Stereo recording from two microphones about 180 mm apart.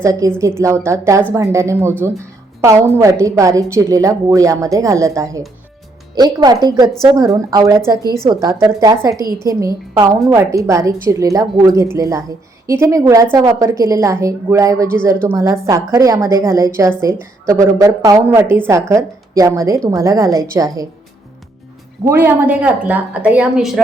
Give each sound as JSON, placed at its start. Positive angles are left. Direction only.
{"t": 0.0, "sound": "a woman's voice", "side_deg": -15}
{"t": 22.0, "sound": "a woman's voice", "side_deg": -10}